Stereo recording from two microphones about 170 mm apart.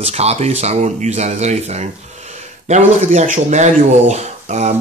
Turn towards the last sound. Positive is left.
turn(degrees=-40)  # may be behind; listen again after turning